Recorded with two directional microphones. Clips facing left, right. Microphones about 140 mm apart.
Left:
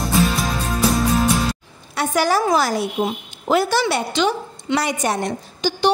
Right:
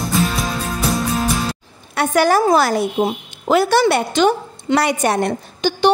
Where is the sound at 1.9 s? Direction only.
55° right (ahead or behind).